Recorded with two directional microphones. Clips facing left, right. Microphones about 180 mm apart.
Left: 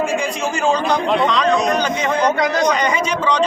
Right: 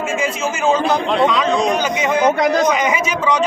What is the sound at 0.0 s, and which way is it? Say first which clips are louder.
A man's voice: even; 5° right (ahead or behind).